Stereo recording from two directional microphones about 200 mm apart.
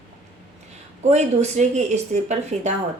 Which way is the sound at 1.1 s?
35° right (ahead or behind).